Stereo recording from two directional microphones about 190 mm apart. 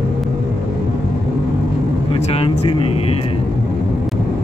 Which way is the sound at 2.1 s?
30° left (ahead or behind).